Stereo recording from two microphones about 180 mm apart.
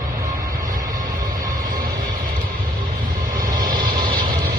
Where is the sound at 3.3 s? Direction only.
50° right (ahead or behind).